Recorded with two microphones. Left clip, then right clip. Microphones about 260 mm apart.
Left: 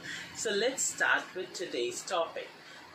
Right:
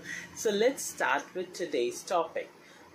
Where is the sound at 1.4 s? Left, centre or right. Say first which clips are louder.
Right 2 dB; centre.